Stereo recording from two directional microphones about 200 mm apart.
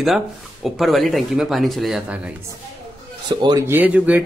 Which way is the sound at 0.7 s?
Centre (ahead or behind).